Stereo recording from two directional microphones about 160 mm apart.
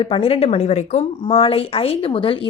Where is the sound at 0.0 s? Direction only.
35° left (ahead or behind).